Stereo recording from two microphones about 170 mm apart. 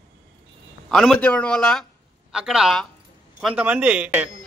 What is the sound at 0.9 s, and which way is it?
A man's voice, 5° left (ahead or behind).